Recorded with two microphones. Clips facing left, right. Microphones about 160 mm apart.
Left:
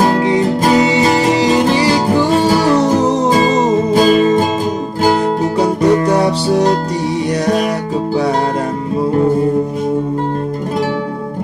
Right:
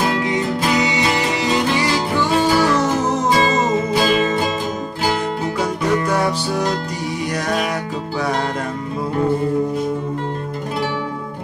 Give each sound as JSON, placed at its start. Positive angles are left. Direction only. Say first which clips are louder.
{"t": 0.0, "sound": "music", "louder": "left 7 dB", "side_deg": 40}